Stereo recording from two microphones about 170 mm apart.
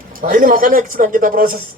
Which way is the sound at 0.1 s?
50° right (ahead or behind).